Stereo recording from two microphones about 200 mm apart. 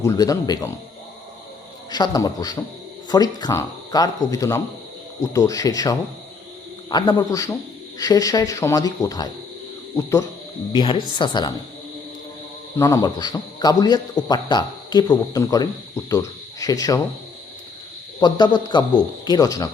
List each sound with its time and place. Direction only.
0.0 s a man's voice: 15° left (ahead or behind)
1.9 s a man's voice: 20° left (ahead or behind)
12.7 s a man's voice: 15° left (ahead or behind)
18.2 s speech: 20° left (ahead or behind)